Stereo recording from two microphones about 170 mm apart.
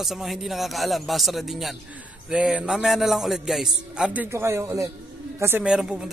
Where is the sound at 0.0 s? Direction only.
Centre (ahead or behind).